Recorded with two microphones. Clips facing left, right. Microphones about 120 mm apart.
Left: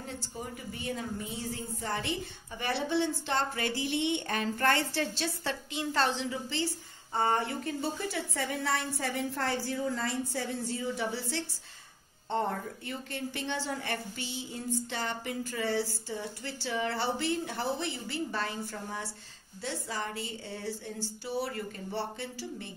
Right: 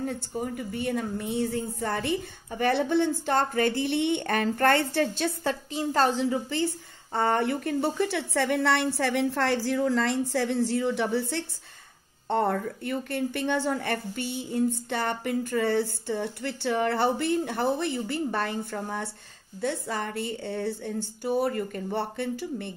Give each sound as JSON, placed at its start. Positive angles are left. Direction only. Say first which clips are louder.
{"t": 0.0, "sound": "a woman's voice", "louder": "right 9 dB", "side_deg": -55}
{"t": 7.2, "sound": "a woman's voice", "louder": "right 4 dB", "side_deg": -60}